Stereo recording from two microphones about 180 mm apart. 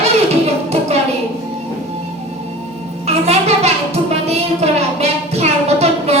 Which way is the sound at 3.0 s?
35° right (ahead or behind).